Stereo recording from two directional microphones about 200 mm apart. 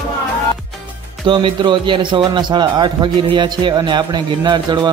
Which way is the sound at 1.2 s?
25° right (ahead or behind).